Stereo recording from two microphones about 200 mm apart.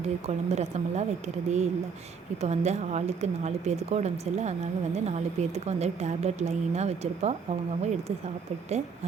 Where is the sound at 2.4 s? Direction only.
35° right (ahead or behind).